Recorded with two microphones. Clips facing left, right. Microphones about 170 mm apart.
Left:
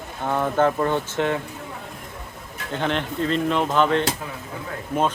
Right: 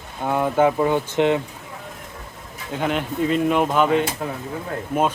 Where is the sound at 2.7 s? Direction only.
5° right (ahead or behind).